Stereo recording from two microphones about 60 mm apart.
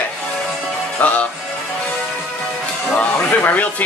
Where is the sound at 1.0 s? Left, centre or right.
Left.